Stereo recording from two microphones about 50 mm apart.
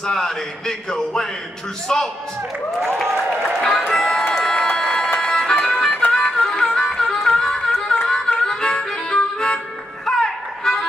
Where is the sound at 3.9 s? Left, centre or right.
Centre.